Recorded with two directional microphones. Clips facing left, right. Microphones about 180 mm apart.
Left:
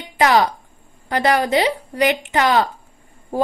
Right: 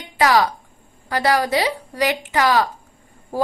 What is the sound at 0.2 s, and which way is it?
A woman's voice, 30° left (ahead or behind).